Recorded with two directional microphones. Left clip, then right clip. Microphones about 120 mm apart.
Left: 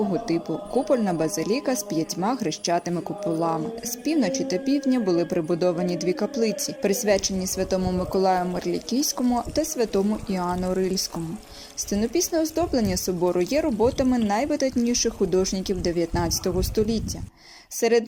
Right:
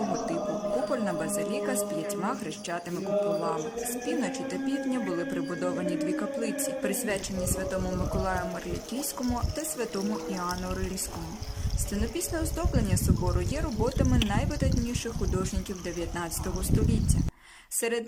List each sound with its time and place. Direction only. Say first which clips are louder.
0.9 s speech: left 7 dB; 30° left (ahead or behind)
4.0 s speech: left 10 dB; 30° left (ahead or behind)
9.6 s speech: left 9 dB; 30° left (ahead or behind)
17.7 s speech: left 9 dB; 30° left (ahead or behind)